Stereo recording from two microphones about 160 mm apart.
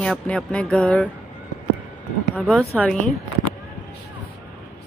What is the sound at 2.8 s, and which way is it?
Speech, centre (ahead or behind).